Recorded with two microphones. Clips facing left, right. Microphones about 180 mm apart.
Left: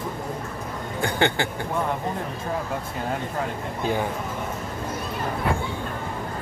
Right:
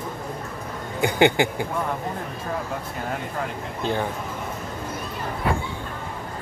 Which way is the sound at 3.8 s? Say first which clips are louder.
Even; 10° left (ahead or behind).